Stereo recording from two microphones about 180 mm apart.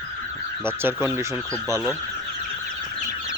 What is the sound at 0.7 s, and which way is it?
Speech, 10° right (ahead or behind).